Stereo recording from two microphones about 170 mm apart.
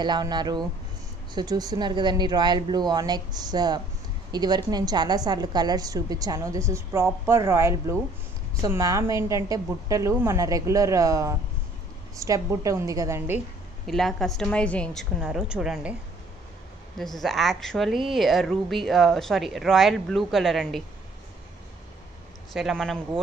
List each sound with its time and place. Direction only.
0.0 s a woman's voice: 25° right (ahead or behind)
13.8 s speech: centre (ahead or behind)
17.0 s speech: centre (ahead or behind)
22.5 s speech: centre (ahead or behind)